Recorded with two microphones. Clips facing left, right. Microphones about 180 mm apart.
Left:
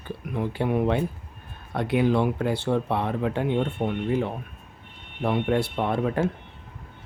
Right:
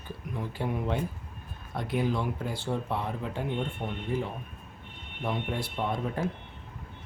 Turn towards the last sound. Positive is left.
turn(degrees=75)  # may be behind; listen again after turning